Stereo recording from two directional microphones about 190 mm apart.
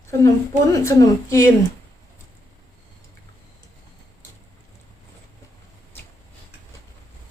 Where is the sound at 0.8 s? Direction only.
15° left (ahead or behind).